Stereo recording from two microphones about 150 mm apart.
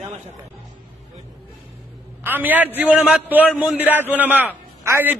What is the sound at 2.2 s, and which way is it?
A man's voice, 15° right (ahead or behind).